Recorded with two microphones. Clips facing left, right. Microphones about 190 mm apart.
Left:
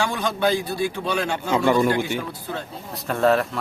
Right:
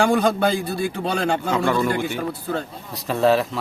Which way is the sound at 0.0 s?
55° right (ahead or behind).